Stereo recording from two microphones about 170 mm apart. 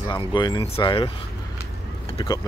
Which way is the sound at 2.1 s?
20° left (ahead or behind).